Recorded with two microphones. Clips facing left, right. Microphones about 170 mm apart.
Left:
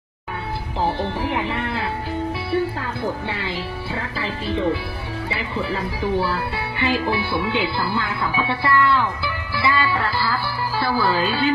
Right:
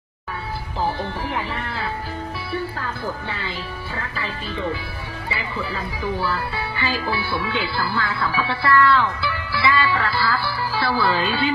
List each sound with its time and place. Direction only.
0.8 s speech: 25° left (ahead or behind)
2.5 s music: 25° left (ahead or behind)
3.4 s speech: 25° left (ahead or behind); by 11.5 s 5° left (ahead or behind)